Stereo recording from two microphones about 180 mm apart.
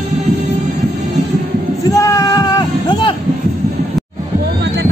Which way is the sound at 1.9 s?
20° left (ahead or behind).